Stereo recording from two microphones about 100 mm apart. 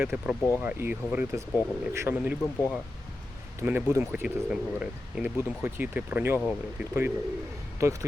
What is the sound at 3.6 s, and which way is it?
Speech, 20° right (ahead or behind).